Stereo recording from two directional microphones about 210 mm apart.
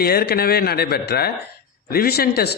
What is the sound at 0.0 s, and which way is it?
A man's voice, 45° left (ahead or behind).